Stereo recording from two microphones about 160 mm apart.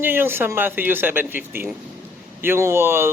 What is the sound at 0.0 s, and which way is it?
Speech, 10° right (ahead or behind).